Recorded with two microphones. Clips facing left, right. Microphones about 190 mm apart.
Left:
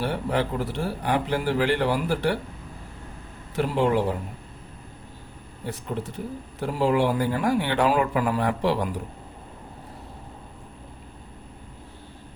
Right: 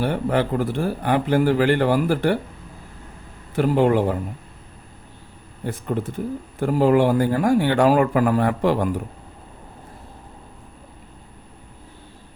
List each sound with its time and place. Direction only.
0.0 s speech: 55° right (ahead or behind)
3.5 s speech: 55° right (ahead or behind)
5.6 s speech: 50° right (ahead or behind)